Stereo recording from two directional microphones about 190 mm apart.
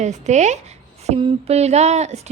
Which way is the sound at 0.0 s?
40° right (ahead or behind).